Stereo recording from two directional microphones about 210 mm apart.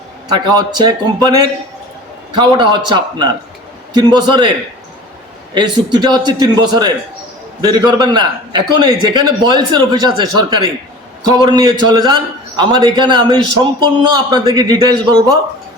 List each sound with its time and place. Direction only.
0.3 s a man's voice: 20° right (ahead or behind)
5.5 s a man's voice: 20° right (ahead or behind)